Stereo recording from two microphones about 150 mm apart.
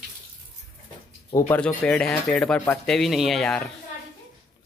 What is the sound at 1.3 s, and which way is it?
Speech, 30° left (ahead or behind).